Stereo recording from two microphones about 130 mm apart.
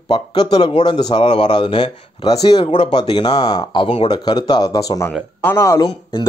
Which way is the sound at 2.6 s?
60° left (ahead or behind).